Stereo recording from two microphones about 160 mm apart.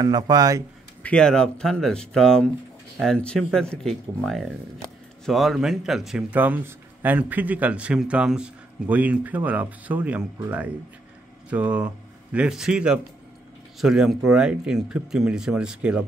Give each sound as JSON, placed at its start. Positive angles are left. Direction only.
{"t": 0.0, "sound": "speech", "side_deg": -25}
{"t": 1.0, "sound": "speech", "side_deg": 5}
{"t": 11.5, "sound": "speech", "side_deg": -10}